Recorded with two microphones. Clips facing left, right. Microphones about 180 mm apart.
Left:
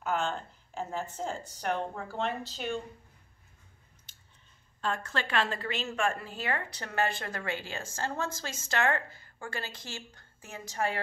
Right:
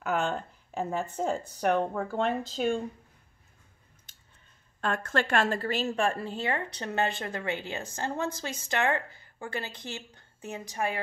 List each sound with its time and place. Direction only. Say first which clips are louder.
0.0 s a woman's voice: right 3 dB; 60° right (ahead or behind)
4.7 s a woman's voice: right 4 dB; 55° right (ahead or behind); by 11.0 s 15° right (ahead or behind)